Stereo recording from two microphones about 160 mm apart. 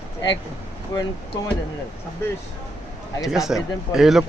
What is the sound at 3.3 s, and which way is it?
Speech, centre (ahead or behind).